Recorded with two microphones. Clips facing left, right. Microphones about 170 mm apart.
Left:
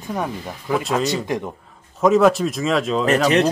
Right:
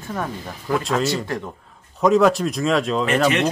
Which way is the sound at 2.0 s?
Centre (ahead or behind).